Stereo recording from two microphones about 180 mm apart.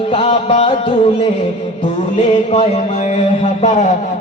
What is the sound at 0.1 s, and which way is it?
Music, 30° left (ahead or behind).